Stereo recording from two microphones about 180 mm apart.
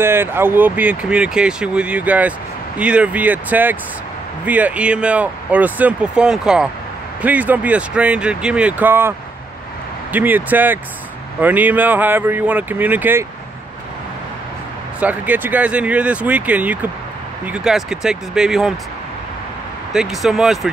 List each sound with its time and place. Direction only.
0.0 s speech: 10° right (ahead or behind)
10.1 s speech: 10° right (ahead or behind)
15.0 s speech: 10° right (ahead or behind)
19.9 s speech: centre (ahead or behind)